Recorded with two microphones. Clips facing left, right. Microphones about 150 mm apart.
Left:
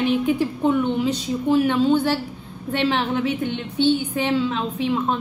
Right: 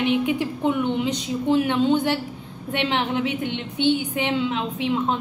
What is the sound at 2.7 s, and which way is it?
A woman's voice, 15° right (ahead or behind).